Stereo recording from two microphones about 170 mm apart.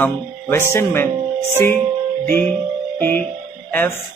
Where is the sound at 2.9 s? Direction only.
10° left (ahead or behind).